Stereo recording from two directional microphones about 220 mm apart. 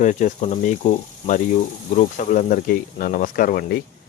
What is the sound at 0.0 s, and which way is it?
Speech, 35° left (ahead or behind).